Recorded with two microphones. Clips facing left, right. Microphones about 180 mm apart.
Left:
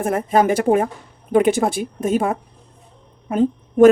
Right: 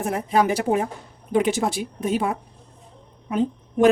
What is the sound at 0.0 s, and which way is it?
A woman's voice, 50° left (ahead or behind).